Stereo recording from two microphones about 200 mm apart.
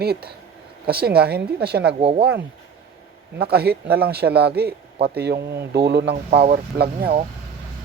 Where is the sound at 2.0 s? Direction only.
30° right (ahead or behind).